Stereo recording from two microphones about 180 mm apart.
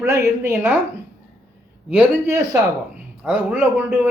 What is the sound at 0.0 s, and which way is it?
Speech, 15° right (ahead or behind).